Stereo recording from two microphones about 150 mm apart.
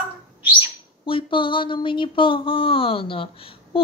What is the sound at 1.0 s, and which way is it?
Speech, 35° left (ahead or behind).